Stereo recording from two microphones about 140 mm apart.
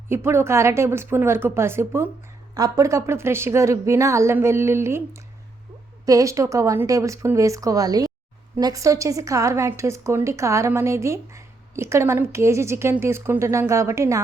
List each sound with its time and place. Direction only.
0.1 s a woman's voice: 15° right (ahead or behind)